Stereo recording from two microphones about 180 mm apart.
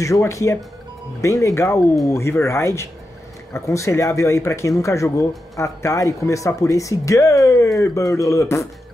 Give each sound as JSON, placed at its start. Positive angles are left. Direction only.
{"t": 0.0, "sound": "speech", "side_deg": 15}